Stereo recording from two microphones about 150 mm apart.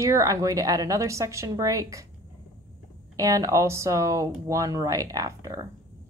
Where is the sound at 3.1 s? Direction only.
20° right (ahead or behind).